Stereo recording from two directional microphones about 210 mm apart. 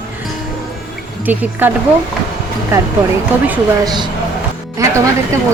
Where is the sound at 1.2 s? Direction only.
10° right (ahead or behind).